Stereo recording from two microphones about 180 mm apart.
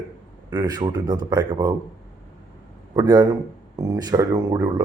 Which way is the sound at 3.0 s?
20° right (ahead or behind).